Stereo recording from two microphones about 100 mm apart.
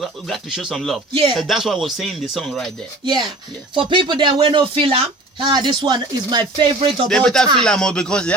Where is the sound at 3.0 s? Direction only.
50° right (ahead or behind); by 5.5 s 65° right (ahead or behind).